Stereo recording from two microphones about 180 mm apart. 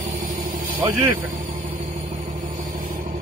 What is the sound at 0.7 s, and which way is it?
Speech, 25° right (ahead or behind).